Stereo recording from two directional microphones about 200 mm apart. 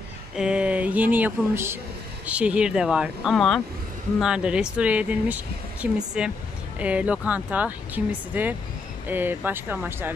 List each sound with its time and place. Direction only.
0.4 s speech: 5° right (ahead or behind)